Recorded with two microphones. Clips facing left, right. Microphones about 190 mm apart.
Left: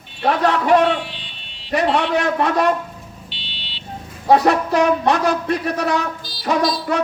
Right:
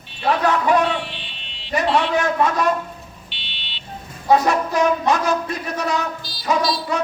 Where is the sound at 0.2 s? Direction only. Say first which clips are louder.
Left 1 dB; 65° left (ahead or behind).